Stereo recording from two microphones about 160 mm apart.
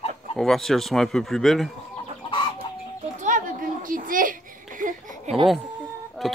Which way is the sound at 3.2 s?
55° right (ahead or behind).